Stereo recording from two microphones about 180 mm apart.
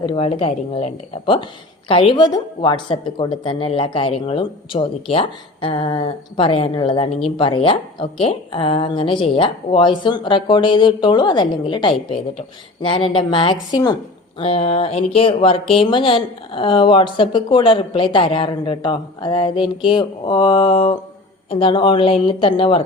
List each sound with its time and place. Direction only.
0.0 s a woman's voice: 30° left (ahead or behind)